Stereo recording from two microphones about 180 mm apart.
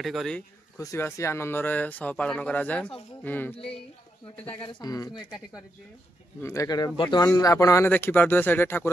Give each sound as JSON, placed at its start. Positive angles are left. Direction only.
{"t": 0.0, "sound": "speech", "side_deg": 0}
{"t": 0.7, "sound": "speech", "side_deg": 15}
{"t": 4.6, "sound": "speech", "side_deg": 25}
{"t": 6.4, "sound": "speech", "side_deg": 20}